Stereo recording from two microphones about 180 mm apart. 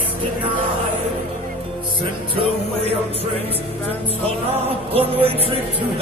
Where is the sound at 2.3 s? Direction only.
35° right (ahead or behind).